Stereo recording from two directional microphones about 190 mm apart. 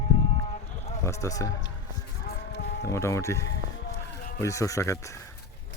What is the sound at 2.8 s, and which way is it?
Speech, 15° left (ahead or behind).